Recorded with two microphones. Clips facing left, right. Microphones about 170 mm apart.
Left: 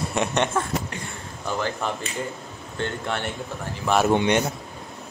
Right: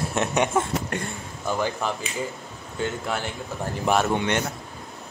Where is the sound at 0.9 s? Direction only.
55° right (ahead or behind).